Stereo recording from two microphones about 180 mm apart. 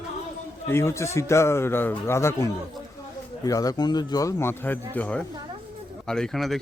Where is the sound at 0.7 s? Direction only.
15° left (ahead or behind).